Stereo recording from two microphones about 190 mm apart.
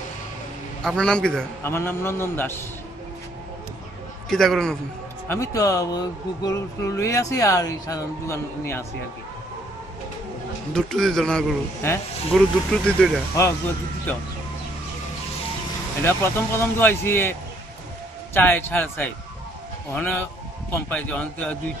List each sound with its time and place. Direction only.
0.8 s speech: 5° left (ahead or behind)
4.3 s a man's voice: centre (ahead or behind)
5.3 s speech: 15° left (ahead or behind)
10.7 s a man's voice: 5° left (ahead or behind)
16.0 s speech: 10° left (ahead or behind)